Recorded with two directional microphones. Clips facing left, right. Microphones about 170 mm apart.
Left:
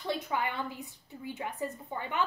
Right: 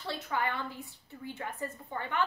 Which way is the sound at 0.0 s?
15° left (ahead or behind).